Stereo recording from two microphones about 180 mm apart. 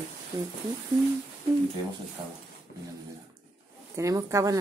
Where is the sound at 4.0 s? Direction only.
15° right (ahead or behind).